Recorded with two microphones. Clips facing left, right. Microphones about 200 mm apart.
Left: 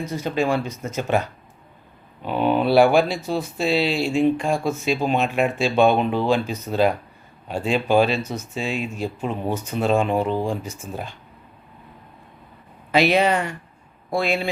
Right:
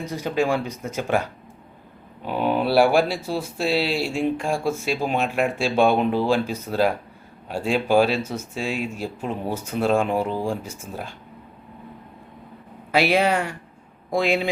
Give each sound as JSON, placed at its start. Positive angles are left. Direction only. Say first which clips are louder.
{"t": 0.0, "sound": "speech", "louder": "even", "side_deg": -15}
{"t": 12.9, "sound": "speech", "louder": "left 1 dB", "side_deg": -10}